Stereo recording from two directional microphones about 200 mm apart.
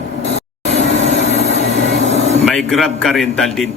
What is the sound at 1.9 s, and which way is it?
Vehicle, 35° right (ahead or behind).